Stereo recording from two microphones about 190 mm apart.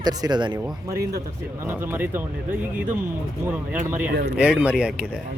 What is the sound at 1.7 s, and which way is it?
Speech, 10° right (ahead or behind).